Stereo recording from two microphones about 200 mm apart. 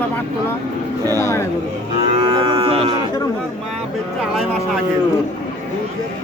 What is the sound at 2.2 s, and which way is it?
Moo, 25° right (ahead or behind).